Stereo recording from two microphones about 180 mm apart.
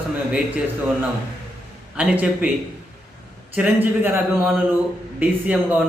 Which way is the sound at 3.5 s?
10° right (ahead or behind).